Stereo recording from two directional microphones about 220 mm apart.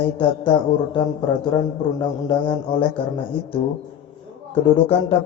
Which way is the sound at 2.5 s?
20° left (ahead or behind).